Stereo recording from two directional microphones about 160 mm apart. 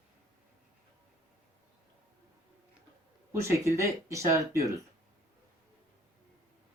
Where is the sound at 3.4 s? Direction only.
20° right (ahead or behind).